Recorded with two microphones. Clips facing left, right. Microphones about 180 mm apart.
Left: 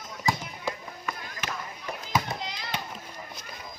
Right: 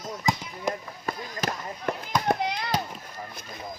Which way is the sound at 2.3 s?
55° right (ahead or behind).